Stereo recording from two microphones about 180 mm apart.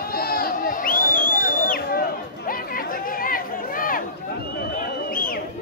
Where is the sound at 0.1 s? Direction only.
55° left (ahead or behind).